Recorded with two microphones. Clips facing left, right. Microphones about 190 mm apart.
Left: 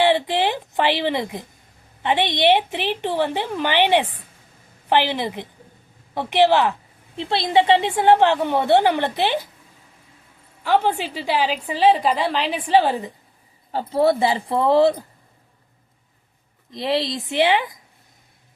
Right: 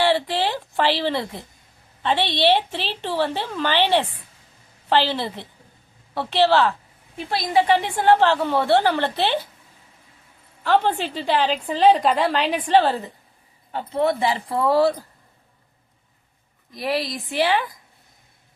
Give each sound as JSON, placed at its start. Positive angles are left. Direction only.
{"t": 0.0, "sound": "a woman's voice", "side_deg": 20}
{"t": 10.6, "sound": "a woman's voice", "side_deg": 10}
{"t": 13.7, "sound": "a woman's voice", "side_deg": 35}
{"t": 16.7, "sound": "a woman's voice", "side_deg": 25}